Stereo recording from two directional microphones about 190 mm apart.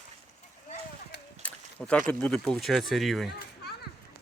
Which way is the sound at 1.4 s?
5° left (ahead or behind).